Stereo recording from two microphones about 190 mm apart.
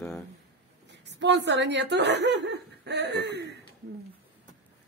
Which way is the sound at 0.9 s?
65° right (ahead or behind).